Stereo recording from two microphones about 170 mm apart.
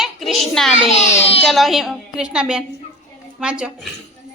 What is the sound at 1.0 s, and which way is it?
Speech, 35° left (ahead or behind).